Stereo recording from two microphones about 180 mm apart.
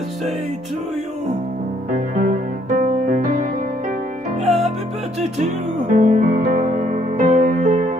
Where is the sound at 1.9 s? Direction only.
45° right (ahead or behind).